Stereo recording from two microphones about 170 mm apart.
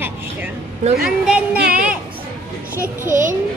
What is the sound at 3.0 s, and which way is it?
Speech, 50° right (ahead or behind).